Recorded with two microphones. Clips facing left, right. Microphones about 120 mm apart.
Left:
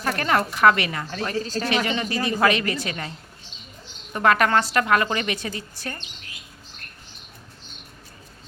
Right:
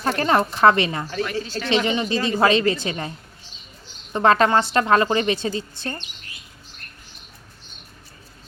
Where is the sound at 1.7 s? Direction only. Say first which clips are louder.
Right 7 dB; 25° right (ahead or behind).